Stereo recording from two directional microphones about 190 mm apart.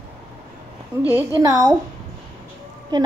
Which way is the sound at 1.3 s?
20° right (ahead or behind).